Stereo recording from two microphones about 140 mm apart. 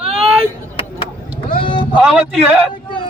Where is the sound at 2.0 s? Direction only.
5° right (ahead or behind).